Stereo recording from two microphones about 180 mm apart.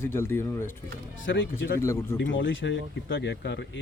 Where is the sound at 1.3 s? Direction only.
90° left.